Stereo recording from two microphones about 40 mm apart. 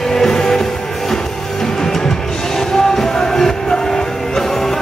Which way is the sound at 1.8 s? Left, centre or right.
Centre.